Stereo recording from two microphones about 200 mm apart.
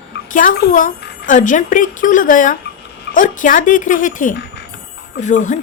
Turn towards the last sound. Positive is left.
turn(degrees=40)  # may be behind; listen again after turning